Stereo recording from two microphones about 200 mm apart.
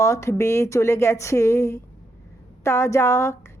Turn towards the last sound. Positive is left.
turn(degrees=15)  # may be behind; listen again after turning